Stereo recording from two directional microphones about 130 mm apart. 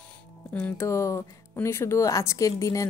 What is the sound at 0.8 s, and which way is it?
A woman's voice, 20° left (ahead or behind).